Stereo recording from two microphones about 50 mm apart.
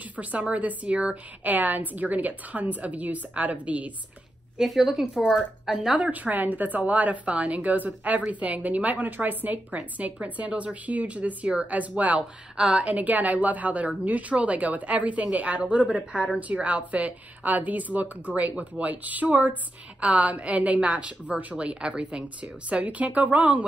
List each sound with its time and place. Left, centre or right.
0.1 s a woman's voice: right
4.6 s a woman's voice: centre
6.1 s a woman's voice: right
12.2 s a woman's voice: centre